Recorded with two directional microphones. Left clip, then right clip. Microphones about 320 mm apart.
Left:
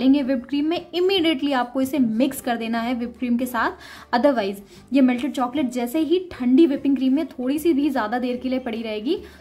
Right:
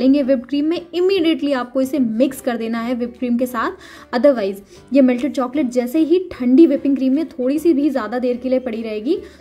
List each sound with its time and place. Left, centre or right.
0.0 s a woman's voice: centre